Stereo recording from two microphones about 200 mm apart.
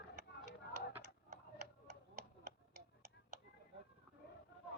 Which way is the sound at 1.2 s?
40° right (ahead or behind).